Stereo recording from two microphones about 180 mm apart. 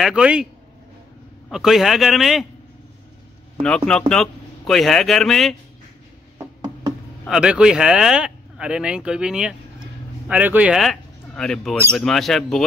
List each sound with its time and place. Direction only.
0.0 s speech: 5° right (ahead or behind)
1.5 s speech: centre (ahead or behind)
3.6 s speech: 5° left (ahead or behind)
6.3 s a sound: 20° right (ahead or behind)
7.2 s speech: 5° right (ahead or behind)